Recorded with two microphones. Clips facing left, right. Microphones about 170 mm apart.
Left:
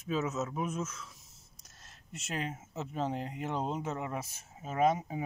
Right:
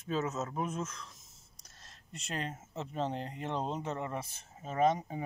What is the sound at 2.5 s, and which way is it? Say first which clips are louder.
Speech: left 1 dB; 5° left (ahead or behind).